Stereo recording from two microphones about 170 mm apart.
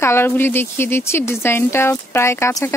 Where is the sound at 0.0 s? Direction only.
15° left (ahead or behind).